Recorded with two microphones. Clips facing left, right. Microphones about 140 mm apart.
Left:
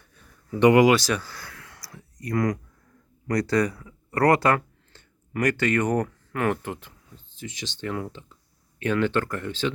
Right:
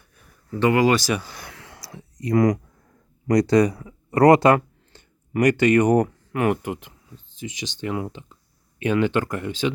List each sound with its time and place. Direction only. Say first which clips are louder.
0.6 s speech: left 3 dB; 20° left (ahead or behind)
0.9 s speech: even; centre (ahead or behind)
1.2 s a sound: right 2 dB; 20° right (ahead or behind)
3.2 s speech: right 6 dB; 20° right (ahead or behind)